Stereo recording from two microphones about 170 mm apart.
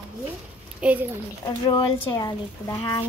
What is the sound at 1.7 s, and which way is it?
Speech, 20° left (ahead or behind).